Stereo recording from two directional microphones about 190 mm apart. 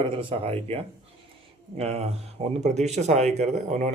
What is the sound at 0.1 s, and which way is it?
Speech, 25° right (ahead or behind).